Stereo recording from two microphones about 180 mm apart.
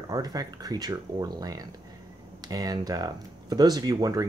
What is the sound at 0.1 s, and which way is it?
Speech, 20° right (ahead or behind).